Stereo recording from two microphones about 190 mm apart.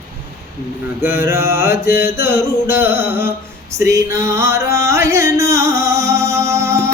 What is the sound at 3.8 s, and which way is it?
Music, 15° right (ahead or behind).